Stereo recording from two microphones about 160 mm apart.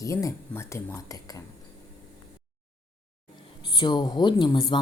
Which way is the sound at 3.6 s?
30° left (ahead or behind).